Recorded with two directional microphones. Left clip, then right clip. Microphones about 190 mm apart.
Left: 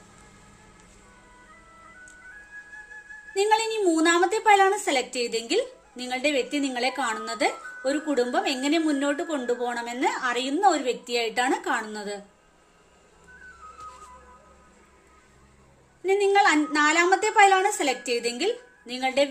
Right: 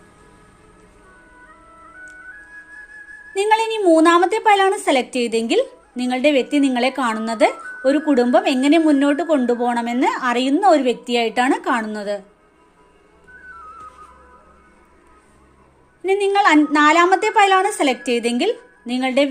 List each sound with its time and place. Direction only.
3.3 s speech: 35° right (ahead or behind)
16.0 s speech: 35° right (ahead or behind)